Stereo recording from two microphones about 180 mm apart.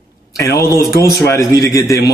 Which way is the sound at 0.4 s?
15° left (ahead or behind).